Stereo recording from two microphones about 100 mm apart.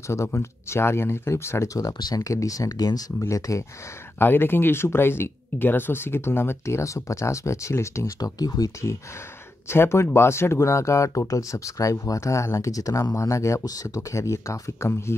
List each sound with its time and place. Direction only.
0.1 s speech: 30° left (ahead or behind)
4.2 s speech: 20° left (ahead or behind); by 8.9 s 35° left (ahead or behind)
9.7 s speech: 25° left (ahead or behind)